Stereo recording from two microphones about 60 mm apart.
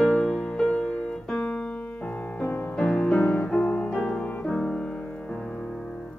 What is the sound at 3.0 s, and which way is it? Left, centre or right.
Music, centre.